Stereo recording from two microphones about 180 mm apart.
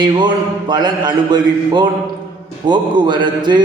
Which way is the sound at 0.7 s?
25° right (ahead or behind).